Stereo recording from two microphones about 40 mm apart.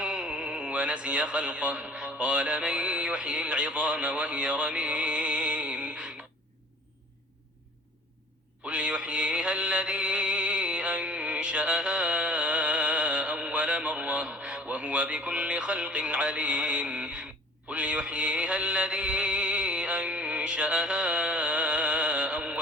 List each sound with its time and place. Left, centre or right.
0.0 s a sound: right
0.7 s speech: right
8.6 s music: right